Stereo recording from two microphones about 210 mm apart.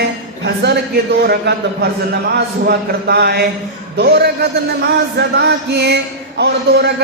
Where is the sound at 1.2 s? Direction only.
50° right (ahead or behind).